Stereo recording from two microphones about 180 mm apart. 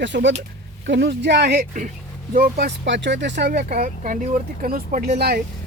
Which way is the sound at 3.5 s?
50° right (ahead or behind).